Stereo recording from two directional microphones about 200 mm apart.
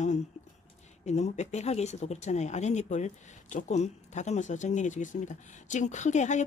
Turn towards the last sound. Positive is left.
turn(degrees=35)  # may be behind; listen again after turning